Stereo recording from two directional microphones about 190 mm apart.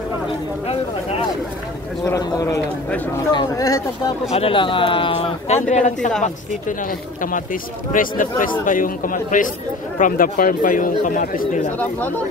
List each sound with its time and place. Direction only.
2.0 s speech: 15° left (ahead or behind)
4.3 s speech: 30° left (ahead or behind)
7.2 s a man's voice: 45° left (ahead or behind)